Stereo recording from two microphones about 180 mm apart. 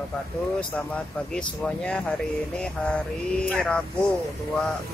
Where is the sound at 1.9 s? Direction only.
5° left (ahead or behind).